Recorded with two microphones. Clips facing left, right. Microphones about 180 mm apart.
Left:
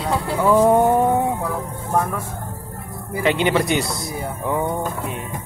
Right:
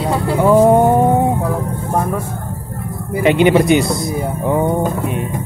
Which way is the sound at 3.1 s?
15° right (ahead or behind).